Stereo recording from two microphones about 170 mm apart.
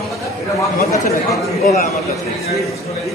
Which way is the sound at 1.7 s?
40° left (ahead or behind).